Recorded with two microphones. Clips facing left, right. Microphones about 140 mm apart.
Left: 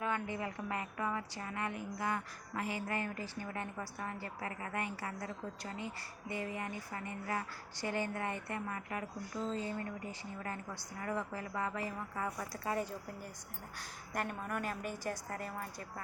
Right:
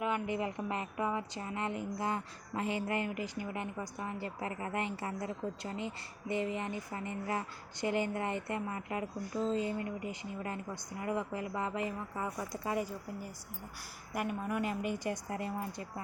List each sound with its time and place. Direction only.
0.0 s a woman's voice: 20° right (ahead or behind)